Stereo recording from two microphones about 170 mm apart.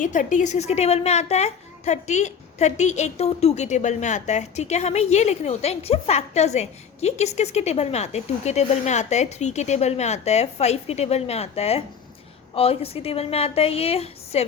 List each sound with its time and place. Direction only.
0.0 s a child's voice: 50° left (ahead or behind)